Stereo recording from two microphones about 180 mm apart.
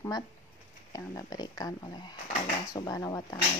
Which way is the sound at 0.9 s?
20° left (ahead or behind).